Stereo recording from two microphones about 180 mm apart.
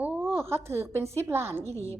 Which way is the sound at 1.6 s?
35° right (ahead or behind).